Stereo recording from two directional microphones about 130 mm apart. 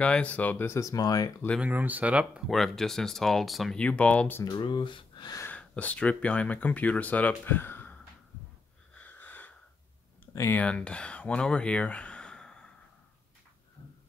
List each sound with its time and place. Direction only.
0.0 s speech: 10° left (ahead or behind); by 1.3 s 25° left (ahead or behind)
1.6 s speech: 10° right (ahead or behind); by 4.5 s 15° left (ahead or behind)
4.5 s speech: 35° left (ahead or behind)
5.4 s speech: 10° left (ahead or behind)
8.9 s sniff: 15° left (ahead or behind)
10.2 s speech: 20° left (ahead or behind)